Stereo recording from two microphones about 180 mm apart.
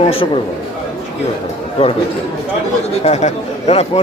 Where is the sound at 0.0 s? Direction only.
30° left (ahead or behind).